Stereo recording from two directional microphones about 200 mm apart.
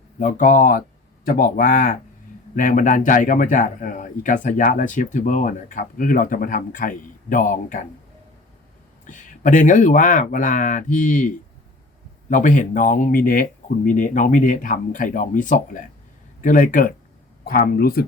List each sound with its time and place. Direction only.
0.2 s a man's voice: 40° left (ahead or behind)
9.0 s a man's voice: 40° left (ahead or behind)